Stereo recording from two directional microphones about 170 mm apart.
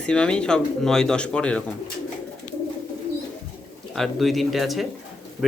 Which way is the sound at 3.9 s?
Centre (ahead or behind).